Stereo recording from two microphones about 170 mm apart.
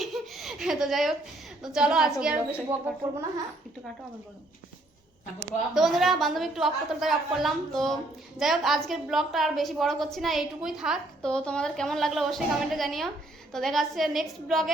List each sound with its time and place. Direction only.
0.0 s laughter: centre (ahead or behind)
1.6 s a woman's voice: 5° right (ahead or behind)
2.6 s speech: 20° right (ahead or behind)
5.7 s a woman's voice: centre (ahead or behind)